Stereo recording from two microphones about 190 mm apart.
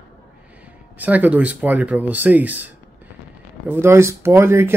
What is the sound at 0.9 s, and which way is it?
Speech, 10° right (ahead or behind).